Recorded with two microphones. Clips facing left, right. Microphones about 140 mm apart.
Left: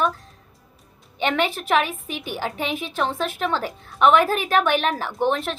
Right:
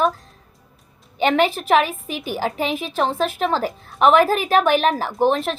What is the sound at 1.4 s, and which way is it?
A woman's voice, 30° right (ahead or behind).